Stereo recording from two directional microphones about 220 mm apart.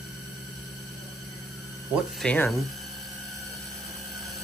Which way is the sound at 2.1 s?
5° left (ahead or behind).